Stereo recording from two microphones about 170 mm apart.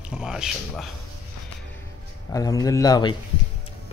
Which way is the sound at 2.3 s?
20° left (ahead or behind).